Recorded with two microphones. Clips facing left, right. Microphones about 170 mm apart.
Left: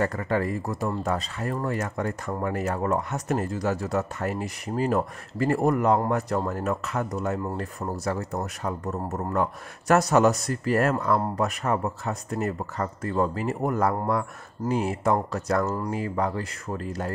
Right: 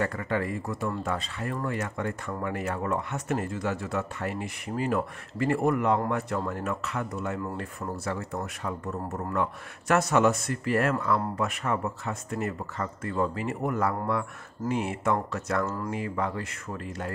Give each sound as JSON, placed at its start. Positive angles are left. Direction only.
{"t": 0.0, "sound": "speech", "side_deg": 40}